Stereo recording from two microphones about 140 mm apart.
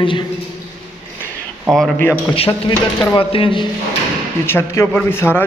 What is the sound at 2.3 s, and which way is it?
A man's voice, 45° left (ahead or behind).